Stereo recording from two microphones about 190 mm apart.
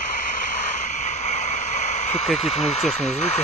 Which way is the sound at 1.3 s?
35° left (ahead or behind).